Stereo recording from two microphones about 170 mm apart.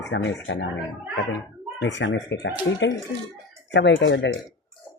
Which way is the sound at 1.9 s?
90° left.